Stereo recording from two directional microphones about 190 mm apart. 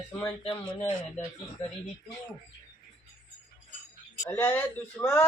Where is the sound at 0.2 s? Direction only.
20° left (ahead or behind).